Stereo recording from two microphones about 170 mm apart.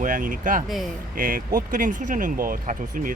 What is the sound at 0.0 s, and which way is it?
Speech, 50° right (ahead or behind).